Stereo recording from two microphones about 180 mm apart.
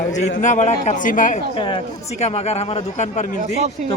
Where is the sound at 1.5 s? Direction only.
30° left (ahead or behind).